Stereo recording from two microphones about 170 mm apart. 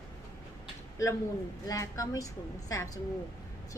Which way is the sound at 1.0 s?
20° left (ahead or behind).